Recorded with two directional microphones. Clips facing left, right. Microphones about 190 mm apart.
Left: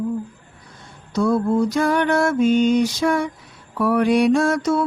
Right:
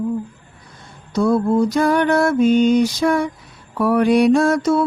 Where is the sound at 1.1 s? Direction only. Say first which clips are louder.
Right 2 dB; 35° right (ahead or behind).